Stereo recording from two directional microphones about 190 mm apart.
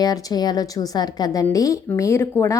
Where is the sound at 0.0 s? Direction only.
20° left (ahead or behind).